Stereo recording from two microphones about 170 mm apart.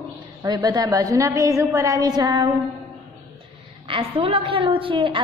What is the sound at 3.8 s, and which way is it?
A woman's voice, 30° right (ahead or behind).